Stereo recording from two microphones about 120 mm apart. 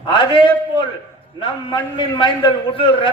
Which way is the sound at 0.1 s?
40° left (ahead or behind).